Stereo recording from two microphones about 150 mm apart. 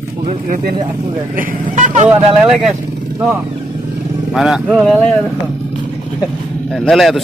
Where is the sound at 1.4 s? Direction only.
55° right (ahead or behind).